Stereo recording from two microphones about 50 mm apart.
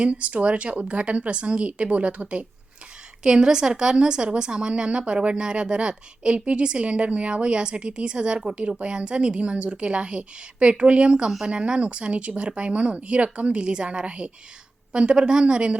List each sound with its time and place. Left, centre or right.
0.0 s a woman's voice: right